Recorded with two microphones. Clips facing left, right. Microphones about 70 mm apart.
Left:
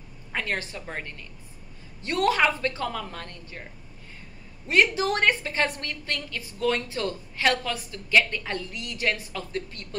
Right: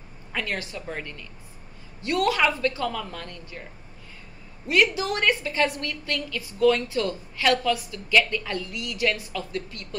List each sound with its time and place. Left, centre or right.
0.3 s a woman's voice: left
4.6 s a woman's voice: left